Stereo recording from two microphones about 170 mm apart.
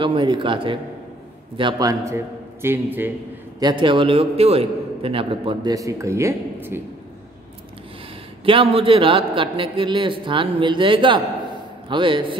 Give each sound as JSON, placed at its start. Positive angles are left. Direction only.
{"t": 0.0, "sound": "a man's voice", "side_deg": -30}
{"t": 3.5, "sound": "a man's voice", "side_deg": -25}
{"t": 8.5, "sound": "a man's voice", "side_deg": -30}